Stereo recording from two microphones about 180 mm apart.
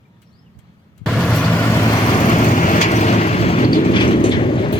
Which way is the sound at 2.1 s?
40° left (ahead or behind).